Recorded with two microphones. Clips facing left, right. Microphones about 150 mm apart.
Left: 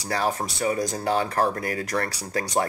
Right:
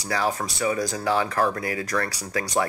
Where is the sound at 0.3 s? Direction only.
30° left (ahead or behind).